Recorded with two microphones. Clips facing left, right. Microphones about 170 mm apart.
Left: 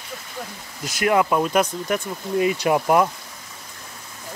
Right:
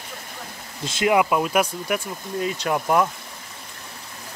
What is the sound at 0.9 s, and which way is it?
Speech, 25° right (ahead or behind).